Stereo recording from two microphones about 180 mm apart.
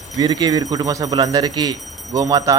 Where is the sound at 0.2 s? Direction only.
20° right (ahead or behind).